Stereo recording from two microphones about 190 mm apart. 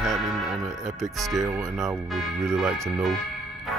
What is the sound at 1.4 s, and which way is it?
Speech, 15° right (ahead or behind).